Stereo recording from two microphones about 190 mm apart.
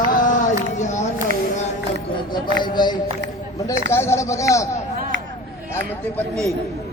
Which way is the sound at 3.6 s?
15° left (ahead or behind).